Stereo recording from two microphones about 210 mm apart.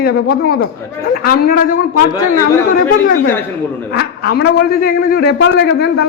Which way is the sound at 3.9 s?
50° left (ahead or behind).